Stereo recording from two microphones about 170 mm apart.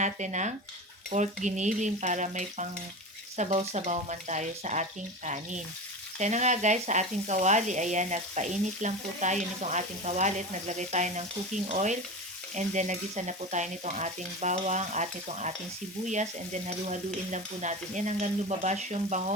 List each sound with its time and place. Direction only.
0.0 s speech: 45° right (ahead or behind)